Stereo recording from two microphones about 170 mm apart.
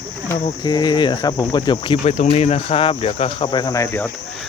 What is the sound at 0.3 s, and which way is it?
Cricket, 30° left (ahead or behind).